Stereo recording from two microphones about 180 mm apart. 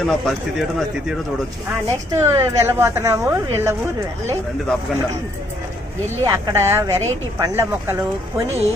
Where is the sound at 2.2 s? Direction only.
15° right (ahead or behind).